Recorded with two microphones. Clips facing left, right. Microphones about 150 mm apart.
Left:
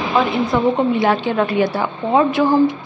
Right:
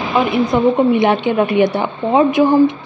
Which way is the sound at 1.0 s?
20° right (ahead or behind).